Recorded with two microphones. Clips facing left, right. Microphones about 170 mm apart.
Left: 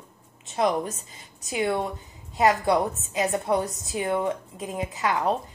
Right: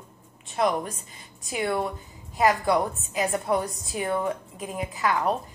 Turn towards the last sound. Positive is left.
turn(degrees=20)  # may be behind; listen again after turning